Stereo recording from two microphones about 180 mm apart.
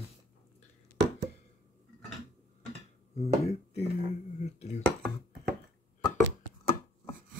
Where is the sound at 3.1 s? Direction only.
35° left (ahead or behind).